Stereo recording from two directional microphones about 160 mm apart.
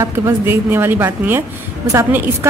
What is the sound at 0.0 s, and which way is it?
A woman's voice, 15° right (ahead or behind).